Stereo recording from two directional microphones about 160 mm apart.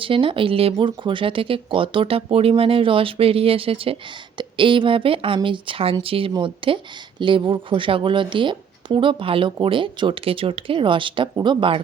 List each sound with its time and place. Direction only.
0.0 s a woman's voice: 35° right (ahead or behind)